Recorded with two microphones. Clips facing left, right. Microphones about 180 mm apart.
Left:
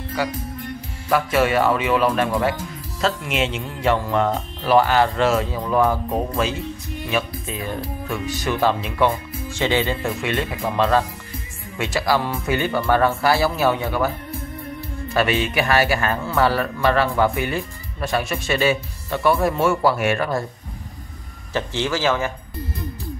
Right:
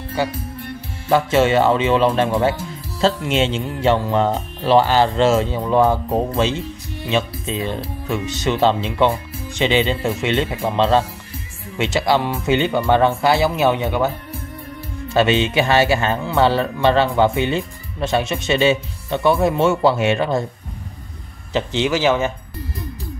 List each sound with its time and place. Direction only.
0.2 s speech: 25° right (ahead or behind)
15.1 s speech: 25° right (ahead or behind)
21.5 s speech: 20° right (ahead or behind)